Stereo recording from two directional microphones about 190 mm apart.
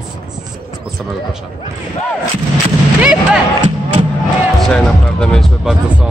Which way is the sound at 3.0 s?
5° right (ahead or behind).